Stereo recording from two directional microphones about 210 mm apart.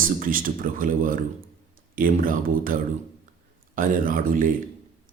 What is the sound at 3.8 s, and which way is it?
Speech, 40° right (ahead or behind).